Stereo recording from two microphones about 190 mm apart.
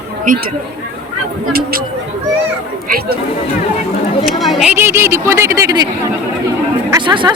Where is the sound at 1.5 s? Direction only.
50° right (ahead or behind).